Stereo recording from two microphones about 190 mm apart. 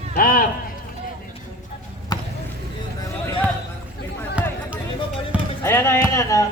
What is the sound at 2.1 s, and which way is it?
Basketball bounce, 20° left (ahead or behind).